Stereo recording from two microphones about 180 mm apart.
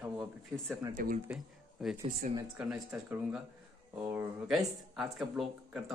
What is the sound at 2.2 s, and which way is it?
Speech, 50° right (ahead or behind).